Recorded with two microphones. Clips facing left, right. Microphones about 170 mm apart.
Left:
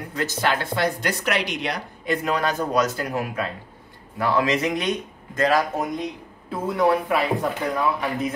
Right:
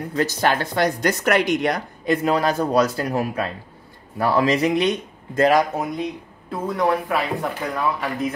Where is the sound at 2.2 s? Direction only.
35° right (ahead or behind).